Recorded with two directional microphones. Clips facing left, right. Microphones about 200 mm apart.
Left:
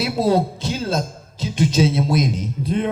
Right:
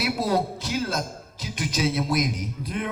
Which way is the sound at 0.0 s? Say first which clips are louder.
Left 6 dB; 25° left (ahead or behind).